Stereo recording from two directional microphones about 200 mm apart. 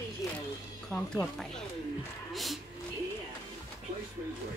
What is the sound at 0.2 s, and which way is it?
Music, centre (ahead or behind).